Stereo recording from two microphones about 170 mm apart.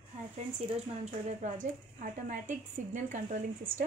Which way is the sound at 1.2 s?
45° right (ahead or behind).